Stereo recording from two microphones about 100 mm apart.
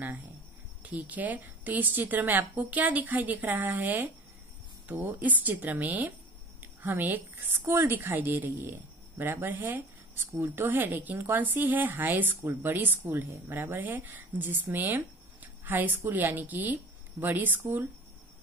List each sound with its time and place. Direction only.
0.8 s a woman's voice: 15° right (ahead or behind)